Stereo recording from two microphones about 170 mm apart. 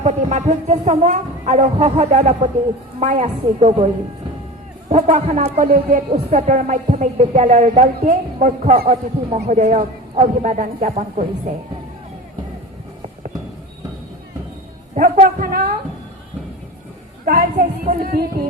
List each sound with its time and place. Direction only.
0.0 s a woman's voice: 40° right (ahead or behind)
4.9 s a woman's voice: 45° right (ahead or behind)
14.9 s speech: 55° right (ahead or behind)
17.2 s speech: 60° right (ahead or behind)